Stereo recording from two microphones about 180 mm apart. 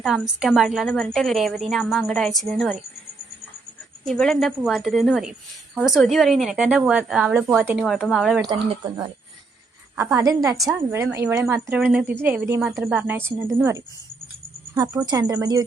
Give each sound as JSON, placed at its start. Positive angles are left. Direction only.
{"t": 0.0, "sound": "a woman's voice", "side_deg": 0}
{"t": 4.0, "sound": "a woman's voice", "side_deg": 0}
{"t": 7.9, "sound": "a woman's voice", "side_deg": 0}
{"t": 10.2, "sound": "a woman's voice", "side_deg": -15}